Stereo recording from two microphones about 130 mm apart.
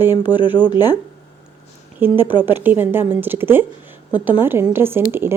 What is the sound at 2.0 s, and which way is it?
A woman's voice, 15° right (ahead or behind).